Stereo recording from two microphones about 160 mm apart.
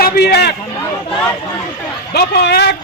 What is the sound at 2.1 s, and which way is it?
Speech, 90° left.